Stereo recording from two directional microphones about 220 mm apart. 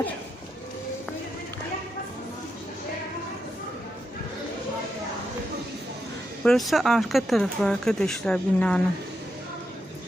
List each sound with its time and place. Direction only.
6.4 s speech: centre (ahead or behind)